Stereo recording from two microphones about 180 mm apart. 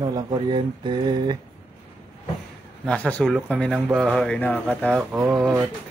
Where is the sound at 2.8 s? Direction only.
5° left (ahead or behind).